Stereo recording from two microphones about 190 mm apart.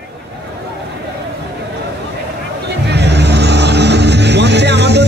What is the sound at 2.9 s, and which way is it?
Vehicle, 60° right (ahead or behind).